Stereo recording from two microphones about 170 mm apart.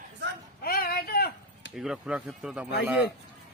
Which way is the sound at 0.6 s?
60° left (ahead or behind).